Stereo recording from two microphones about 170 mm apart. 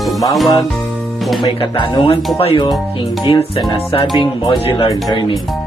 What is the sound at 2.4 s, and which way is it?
Music, 35° left (ahead or behind).